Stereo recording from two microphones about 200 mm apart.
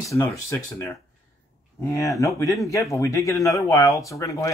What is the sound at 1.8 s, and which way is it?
Speech, 15° left (ahead or behind).